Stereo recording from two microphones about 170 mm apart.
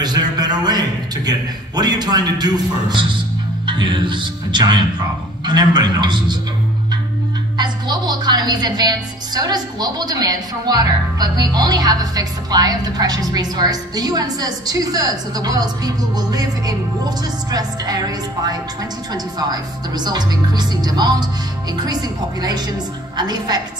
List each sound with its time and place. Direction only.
0.0 s a woman's voice: 25° right (ahead or behind)
7.5 s a woman's voice: 25° right (ahead or behind)
20.1 s a woman's voice: 25° right (ahead or behind)
23.1 s a woman's voice: 25° right (ahead or behind)